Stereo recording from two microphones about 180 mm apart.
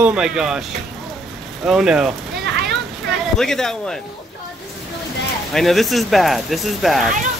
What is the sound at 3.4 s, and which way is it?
Speech, centre (ahead or behind).